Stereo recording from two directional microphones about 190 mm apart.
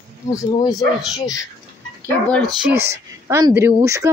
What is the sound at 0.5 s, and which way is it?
Speech, 20° left (ahead or behind).